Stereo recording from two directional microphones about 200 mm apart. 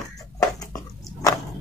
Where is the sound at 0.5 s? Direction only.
20° left (ahead or behind).